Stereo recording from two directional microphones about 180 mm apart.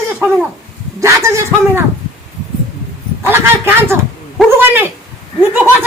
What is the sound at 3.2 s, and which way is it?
Speech, 15° right (ahead or behind).